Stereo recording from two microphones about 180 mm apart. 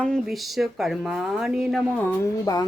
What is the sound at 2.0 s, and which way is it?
Speech, 20° left (ahead or behind).